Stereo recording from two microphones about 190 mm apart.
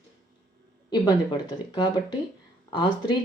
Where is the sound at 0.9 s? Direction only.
20° left (ahead or behind).